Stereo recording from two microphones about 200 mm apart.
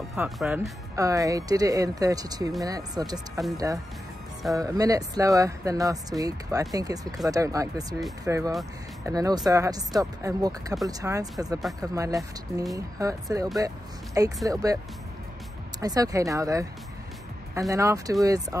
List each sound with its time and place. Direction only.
0.1 s speech: 5° right (ahead or behind)
0.9 s speech: 15° right (ahead or behind)
15.8 s speech: 15° right (ahead or behind)